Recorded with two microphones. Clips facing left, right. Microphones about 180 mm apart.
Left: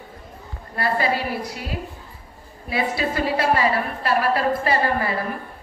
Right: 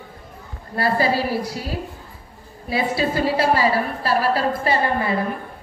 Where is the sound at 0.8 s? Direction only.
30° right (ahead or behind).